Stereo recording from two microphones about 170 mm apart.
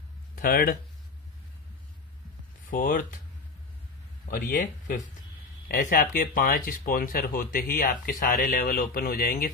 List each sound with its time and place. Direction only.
0.4 s speech: 60° left (ahead or behind)
2.7 s speech: 50° left (ahead or behind)
4.3 s speech: 50° left (ahead or behind)